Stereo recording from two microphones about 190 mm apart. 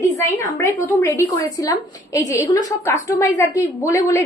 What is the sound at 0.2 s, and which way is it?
A woman's voice, 15° left (ahead or behind).